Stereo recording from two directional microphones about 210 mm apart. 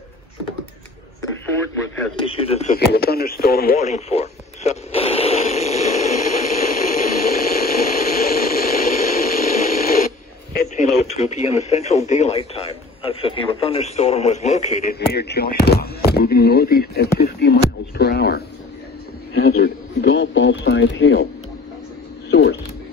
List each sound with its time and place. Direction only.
2.1 s speech: 25° left (ahead or behind)
2.9 s speech: 45° left (ahead or behind)
3.8 s radio: 30° left (ahead or behind)
11.5 s speech: 30° left (ahead or behind)
15.0 s speech: 50° left (ahead or behind)
22.3 s speech: 50° left (ahead or behind)